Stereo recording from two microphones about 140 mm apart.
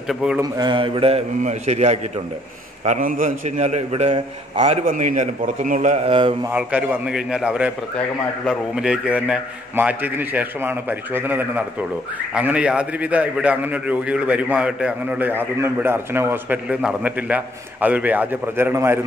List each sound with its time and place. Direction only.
0.1 s speech: 5° right (ahead or behind)
0.4 s mantra: 30° right (ahead or behind)
1.4 s a man's voice: 55° right (ahead or behind)
3.0 s a man's voice: 75° right (ahead or behind); by 4.6 s 40° right (ahead or behind)
4.6 s a man's voice: 60° right (ahead or behind)
6.0 s mantra: 40° right (ahead or behind)
6.5 s a man's voice: 10° right (ahead or behind)